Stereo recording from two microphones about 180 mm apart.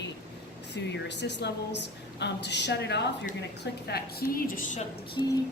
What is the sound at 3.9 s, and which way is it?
Speech, 55° left (ahead or behind).